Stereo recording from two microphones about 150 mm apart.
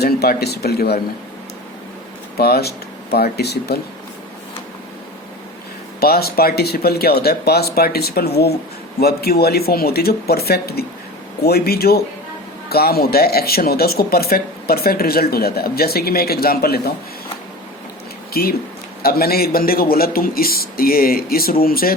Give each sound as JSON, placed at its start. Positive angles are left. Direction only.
{"t": 0.0, "sound": "speech", "side_deg": 90}
{"t": 2.4, "sound": "speech", "side_deg": 90}
{"t": 6.0, "sound": "speech", "side_deg": 90}
{"t": 18.3, "sound": "a man's voice", "side_deg": 90}